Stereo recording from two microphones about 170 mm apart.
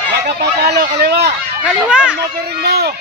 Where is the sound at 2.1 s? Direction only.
70° right (ahead or behind).